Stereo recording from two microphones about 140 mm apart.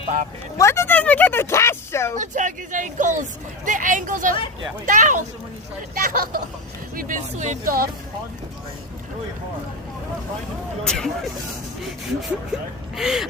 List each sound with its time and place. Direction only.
0.5 s speech: 20° left (ahead or behind)
2.1 s speech: 65° right (ahead or behind)
5.9 s speech: 85° right
10.8 s speech: 5° left (ahead or behind)